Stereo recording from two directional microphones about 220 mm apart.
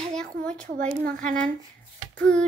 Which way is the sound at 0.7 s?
35° right (ahead or behind).